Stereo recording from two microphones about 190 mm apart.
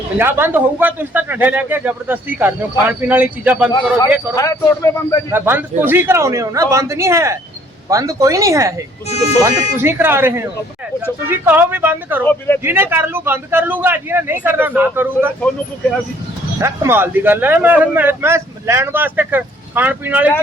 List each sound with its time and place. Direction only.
0.2 s a man's voice: 10° right (ahead or behind)
4.4 s a man's voice: 15° left (ahead or behind)
5.3 s a man's voice: 10° right (ahead or behind)
12.2 s a man's voice: 10° left (ahead or behind)
12.6 s a man's voice: 10° right (ahead or behind)
16.6 s a man's voice: 15° right (ahead or behind)